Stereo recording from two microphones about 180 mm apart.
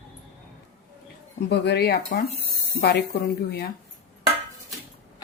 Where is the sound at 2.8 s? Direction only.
65° left (ahead or behind).